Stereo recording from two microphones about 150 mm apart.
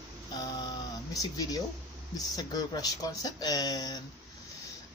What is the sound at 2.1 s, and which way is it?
Speech, 25° left (ahead or behind).